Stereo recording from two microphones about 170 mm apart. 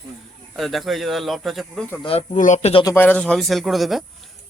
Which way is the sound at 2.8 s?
15° left (ahead or behind).